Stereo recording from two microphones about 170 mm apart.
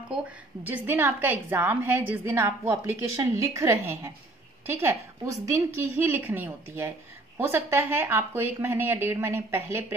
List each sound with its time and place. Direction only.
0.7 s a woman's voice: 10° right (ahead or behind)